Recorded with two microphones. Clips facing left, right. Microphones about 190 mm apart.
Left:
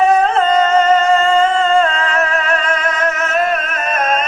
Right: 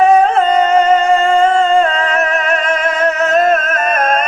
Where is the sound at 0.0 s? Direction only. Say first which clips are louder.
Right 3 dB; 15° right (ahead or behind).